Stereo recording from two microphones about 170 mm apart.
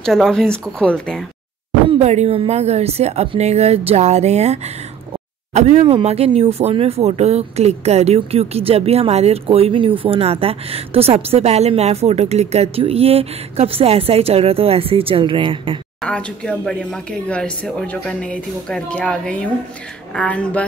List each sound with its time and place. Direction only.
0.0 s speech: 5° left (ahead or behind)
1.9 s a woman's voice: 40° right (ahead or behind)
16.0 s speech: 5° left (ahead or behind)